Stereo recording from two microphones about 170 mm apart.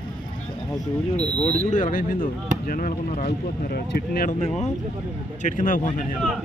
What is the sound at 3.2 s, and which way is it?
Speech, 70° left (ahead or behind).